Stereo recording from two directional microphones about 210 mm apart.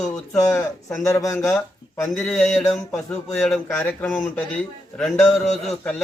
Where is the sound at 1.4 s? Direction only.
Centre (ahead or behind).